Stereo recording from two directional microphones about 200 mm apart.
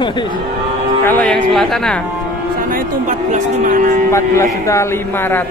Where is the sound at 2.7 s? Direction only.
40° right (ahead or behind).